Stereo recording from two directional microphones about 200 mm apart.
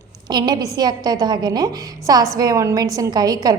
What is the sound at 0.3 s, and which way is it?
A woman's voice, 20° right (ahead or behind).